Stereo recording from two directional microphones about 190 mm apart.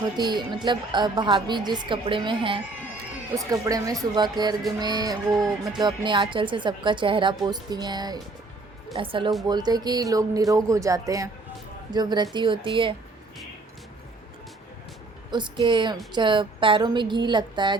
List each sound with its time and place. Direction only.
0.2 s a woman's voice: 25° right (ahead or behind)
15.3 s a woman's voice: 25° right (ahead or behind)